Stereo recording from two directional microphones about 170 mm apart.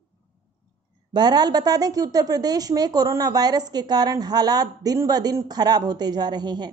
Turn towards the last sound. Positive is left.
turn(degrees=-25)  # may be behind; listen again after turning